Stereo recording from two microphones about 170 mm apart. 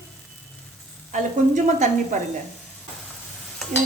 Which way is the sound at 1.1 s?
45° right (ahead or behind).